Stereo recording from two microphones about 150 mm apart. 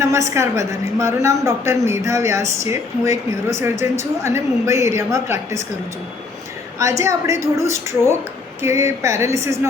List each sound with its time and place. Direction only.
0.0 s a woman's voice: 20° right (ahead or behind)
6.7 s a woman's voice: 20° right (ahead or behind)